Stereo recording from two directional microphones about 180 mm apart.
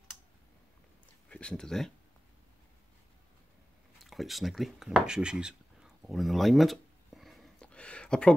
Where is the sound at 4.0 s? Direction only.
Centre (ahead or behind).